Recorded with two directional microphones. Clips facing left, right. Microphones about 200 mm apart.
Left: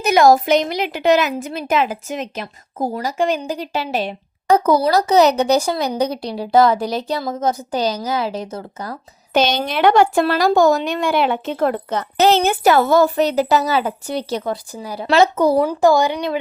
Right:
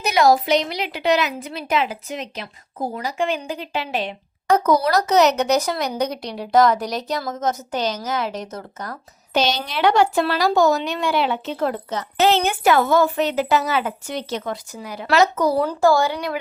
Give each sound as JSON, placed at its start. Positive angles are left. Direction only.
{"t": 0.0, "sound": "a woman's voice", "side_deg": 50}
{"t": 9.3, "sound": "a woman's voice", "side_deg": 50}
{"t": 12.1, "sound": "a woman's voice", "side_deg": 40}
{"t": 15.5, "sound": "speech", "side_deg": 15}